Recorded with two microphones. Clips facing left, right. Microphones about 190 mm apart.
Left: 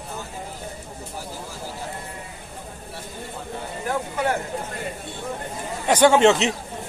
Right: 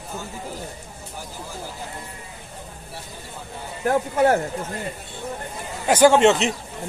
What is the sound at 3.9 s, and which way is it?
Speech, 50° right (ahead or behind).